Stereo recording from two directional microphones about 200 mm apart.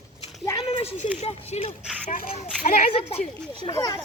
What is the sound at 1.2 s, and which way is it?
Speech, 30° left (ahead or behind).